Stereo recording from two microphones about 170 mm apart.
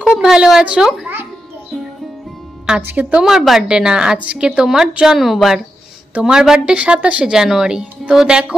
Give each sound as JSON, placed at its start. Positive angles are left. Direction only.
{"t": 0.0, "sound": "speech", "side_deg": -5}
{"t": 2.9, "sound": "a woman's voice", "side_deg": -10}